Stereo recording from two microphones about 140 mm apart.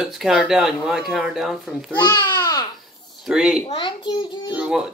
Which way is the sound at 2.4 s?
30° left (ahead or behind).